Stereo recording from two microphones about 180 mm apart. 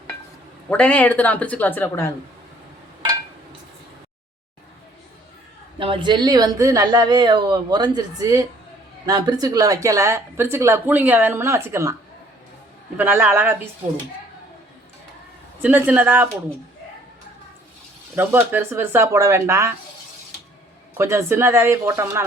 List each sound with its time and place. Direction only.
0.7 s speech: 5° left (ahead or behind)
5.8 s a woman's voice: 30° right (ahead or behind)
13.0 s a woman's voice: 10° right (ahead or behind)
15.6 s a woman's voice: 10° right (ahead or behind)
18.2 s a woman's voice: 10° right (ahead or behind)
21.0 s a woman's voice: 15° right (ahead or behind)